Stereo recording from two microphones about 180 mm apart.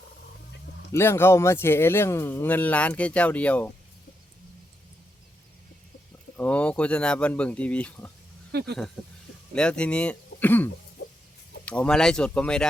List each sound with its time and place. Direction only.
0.9 s a man's voice: 15° left (ahead or behind)
6.3 s a man's voice: 10° left (ahead or behind)
8.5 s speech: 60° right (ahead or behind)
9.6 s a man's voice: 5° left (ahead or behind)